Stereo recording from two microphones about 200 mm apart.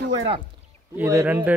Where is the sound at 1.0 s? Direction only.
10° right (ahead or behind).